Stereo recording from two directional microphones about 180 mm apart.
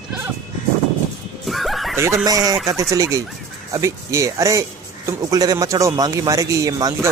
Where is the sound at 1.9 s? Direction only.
15° right (ahead or behind).